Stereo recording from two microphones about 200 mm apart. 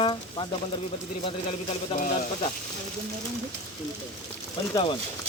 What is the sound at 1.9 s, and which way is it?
Speech, 25° left (ahead or behind).